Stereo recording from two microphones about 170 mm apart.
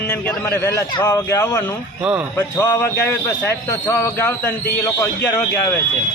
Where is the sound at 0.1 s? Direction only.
10° left (ahead or behind).